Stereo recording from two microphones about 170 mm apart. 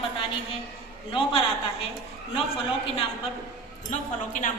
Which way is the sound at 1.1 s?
35° left (ahead or behind).